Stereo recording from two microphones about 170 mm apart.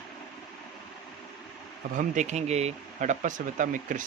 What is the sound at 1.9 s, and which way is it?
Speech, 45° right (ahead or behind).